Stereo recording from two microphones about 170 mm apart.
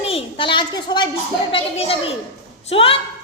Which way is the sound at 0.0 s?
35° left (ahead or behind).